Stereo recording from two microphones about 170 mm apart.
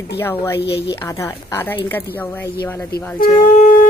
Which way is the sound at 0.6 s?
80° left.